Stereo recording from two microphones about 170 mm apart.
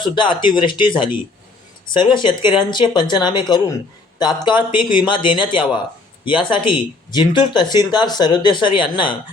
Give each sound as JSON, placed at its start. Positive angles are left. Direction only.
{"t": 0.0, "sound": "speech", "side_deg": 30}